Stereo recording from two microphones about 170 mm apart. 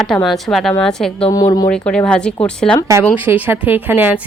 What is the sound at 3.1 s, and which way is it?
Speech, 10° right (ahead or behind).